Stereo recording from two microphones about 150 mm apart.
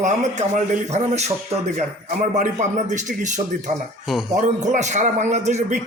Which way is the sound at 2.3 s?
50° right (ahead or behind).